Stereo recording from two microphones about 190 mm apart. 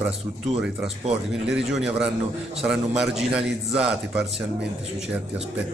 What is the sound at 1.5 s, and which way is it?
A man's voice, centre (ahead or behind).